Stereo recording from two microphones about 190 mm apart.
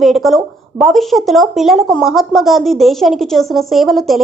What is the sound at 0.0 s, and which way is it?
Speech, centre (ahead or behind).